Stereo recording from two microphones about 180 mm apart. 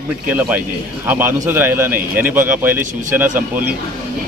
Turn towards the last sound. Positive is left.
turn(degrees=-10)  # may be behind; listen again after turning